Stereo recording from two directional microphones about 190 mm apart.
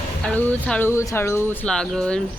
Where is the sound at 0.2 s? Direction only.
5° left (ahead or behind).